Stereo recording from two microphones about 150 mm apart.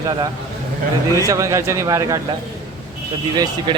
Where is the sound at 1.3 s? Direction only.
20° right (ahead or behind).